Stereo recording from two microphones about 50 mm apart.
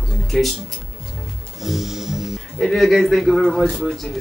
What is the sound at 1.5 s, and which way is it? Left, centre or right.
Music, centre.